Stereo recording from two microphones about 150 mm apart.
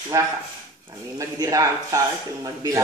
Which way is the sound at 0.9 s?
25° right (ahead or behind).